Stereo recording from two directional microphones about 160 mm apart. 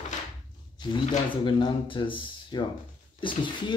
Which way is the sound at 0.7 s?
30° left (ahead or behind).